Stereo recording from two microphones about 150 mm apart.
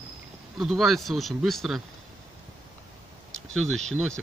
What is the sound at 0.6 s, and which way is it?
Speech, centre (ahead or behind).